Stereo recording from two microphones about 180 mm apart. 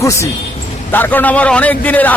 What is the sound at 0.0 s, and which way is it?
A man's voice, 15° left (ahead or behind).